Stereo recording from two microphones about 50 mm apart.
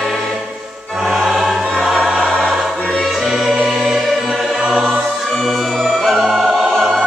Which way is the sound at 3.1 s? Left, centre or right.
Centre.